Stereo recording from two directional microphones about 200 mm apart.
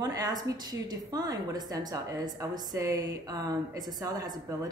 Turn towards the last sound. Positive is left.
turn(degrees=-15)  # may be behind; listen again after turning